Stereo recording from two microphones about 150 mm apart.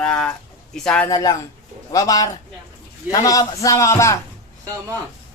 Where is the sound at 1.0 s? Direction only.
25° left (ahead or behind).